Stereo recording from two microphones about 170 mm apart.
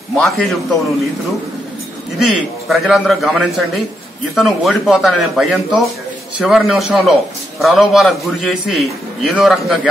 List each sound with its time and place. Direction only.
0.1 s a man's voice: centre (ahead or behind)
2.1 s a man's voice: centre (ahead or behind)